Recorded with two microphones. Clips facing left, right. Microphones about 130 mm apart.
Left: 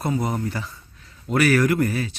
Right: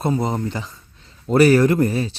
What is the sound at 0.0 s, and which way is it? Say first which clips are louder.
Speech: right 3 dB; 25° right (ahead or behind).